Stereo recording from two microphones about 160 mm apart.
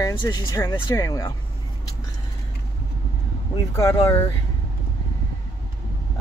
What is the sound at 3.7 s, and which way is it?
Speech, 20° left (ahead or behind).